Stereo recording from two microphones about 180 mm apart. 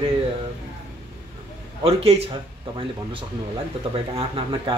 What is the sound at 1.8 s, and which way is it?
Speech, 35° right (ahead or behind).